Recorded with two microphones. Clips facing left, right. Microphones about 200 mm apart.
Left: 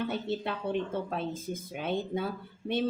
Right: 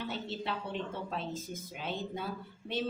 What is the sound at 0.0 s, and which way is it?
A woman's voice, 50° left (ahead or behind).